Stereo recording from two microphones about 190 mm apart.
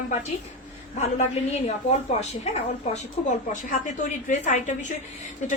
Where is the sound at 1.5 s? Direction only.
35° left (ahead or behind).